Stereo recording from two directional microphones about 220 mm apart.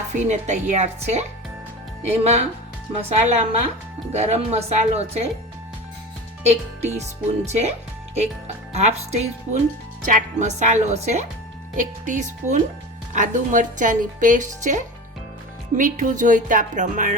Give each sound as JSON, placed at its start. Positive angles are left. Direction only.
{"t": 0.2, "sound": "a woman's voice", "side_deg": -30}
{"t": 6.4, "sound": "speech", "side_deg": -30}
{"t": 8.7, "sound": "speech", "side_deg": -30}